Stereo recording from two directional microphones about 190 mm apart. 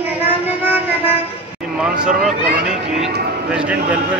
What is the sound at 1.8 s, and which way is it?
Speech, 5° right (ahead or behind).